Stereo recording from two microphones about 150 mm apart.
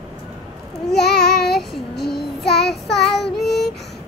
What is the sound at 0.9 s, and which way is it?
Child singing, 90° left.